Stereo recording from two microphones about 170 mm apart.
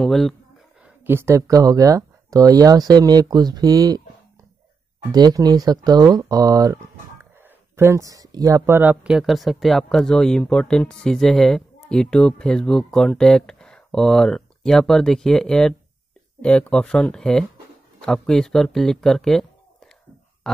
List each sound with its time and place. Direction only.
0.0 s speech: centre (ahead or behind)
0.8 s speech: 15° right (ahead or behind)
5.1 s speech: 25° right (ahead or behind); by 19.9 s 5° left (ahead or behind)
20.4 s dog: 5° left (ahead or behind)